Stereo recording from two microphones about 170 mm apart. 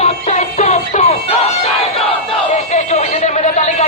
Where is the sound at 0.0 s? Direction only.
45° left (ahead or behind).